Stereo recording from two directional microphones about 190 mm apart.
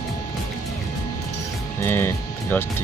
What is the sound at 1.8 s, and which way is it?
Speech, 10° left (ahead or behind).